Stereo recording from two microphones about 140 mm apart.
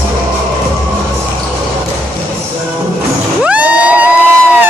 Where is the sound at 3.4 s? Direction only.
10° right (ahead or behind).